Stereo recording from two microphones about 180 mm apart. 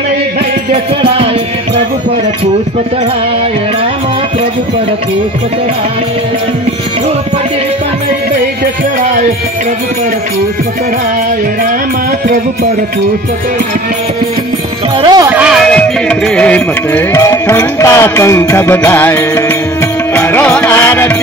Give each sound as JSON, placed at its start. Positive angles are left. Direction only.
{"t": 15.0, "sound": "speech", "side_deg": -20}
{"t": 15.3, "sound": "music", "side_deg": -5}